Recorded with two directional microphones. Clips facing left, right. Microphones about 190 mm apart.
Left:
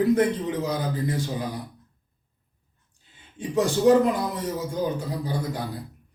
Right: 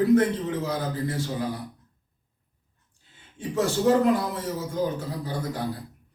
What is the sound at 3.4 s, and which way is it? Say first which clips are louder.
A man's voice: left 2 dB; 15° left (ahead or behind).